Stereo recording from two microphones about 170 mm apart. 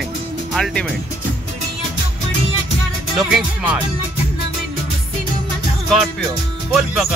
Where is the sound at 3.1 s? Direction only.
5° right (ahead or behind).